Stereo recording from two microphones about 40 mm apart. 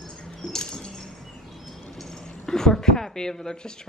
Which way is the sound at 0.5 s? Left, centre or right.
Centre.